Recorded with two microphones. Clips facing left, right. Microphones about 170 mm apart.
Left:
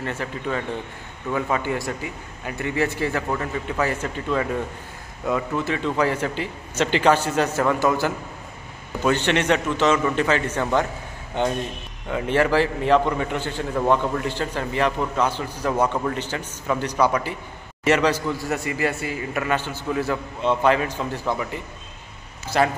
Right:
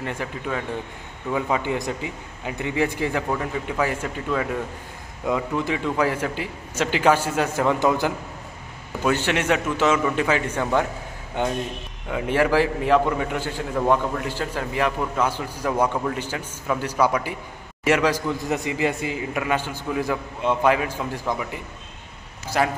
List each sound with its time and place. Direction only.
0.0 s a man's voice: 15° right (ahead or behind)
5.2 s a man's voice: 10° right (ahead or behind)
22.5 s a man's voice: 10° right (ahead or behind)